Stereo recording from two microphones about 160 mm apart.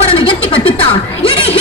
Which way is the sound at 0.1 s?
35° left (ahead or behind).